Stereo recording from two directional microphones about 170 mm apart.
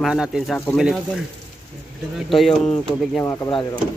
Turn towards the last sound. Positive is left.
turn(degrees=25)  # may be behind; listen again after turning